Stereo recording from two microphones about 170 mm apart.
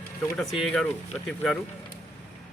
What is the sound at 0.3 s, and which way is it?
Speech, centre (ahead or behind).